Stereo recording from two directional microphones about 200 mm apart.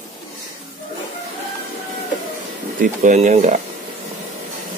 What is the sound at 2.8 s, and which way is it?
Speech, 40° right (ahead or behind).